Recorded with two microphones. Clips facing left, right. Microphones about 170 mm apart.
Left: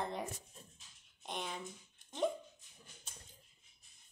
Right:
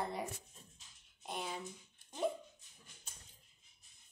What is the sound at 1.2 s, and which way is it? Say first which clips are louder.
Speech: even; 5° right (ahead or behind).